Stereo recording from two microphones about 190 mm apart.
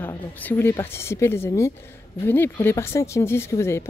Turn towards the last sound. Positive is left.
turn(degrees=15)  # may be behind; listen again after turning